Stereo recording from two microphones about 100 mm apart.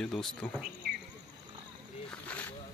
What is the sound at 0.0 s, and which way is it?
Speech, 5° left (ahead or behind).